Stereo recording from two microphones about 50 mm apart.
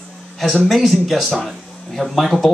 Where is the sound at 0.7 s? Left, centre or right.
Centre.